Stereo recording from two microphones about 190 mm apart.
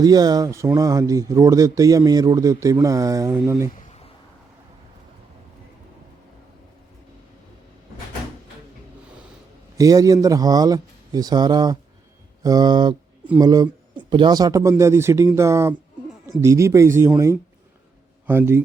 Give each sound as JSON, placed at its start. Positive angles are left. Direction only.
{"t": 0.0, "sound": "speech", "side_deg": -20}
{"t": 3.7, "sound": "a sound", "side_deg": 40}
{"t": 9.7, "sound": "speech", "side_deg": -20}